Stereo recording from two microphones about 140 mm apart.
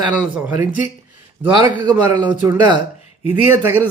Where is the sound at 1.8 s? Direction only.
30° right (ahead or behind).